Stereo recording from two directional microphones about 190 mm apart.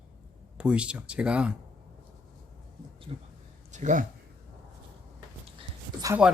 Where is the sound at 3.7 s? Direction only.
40° right (ahead or behind).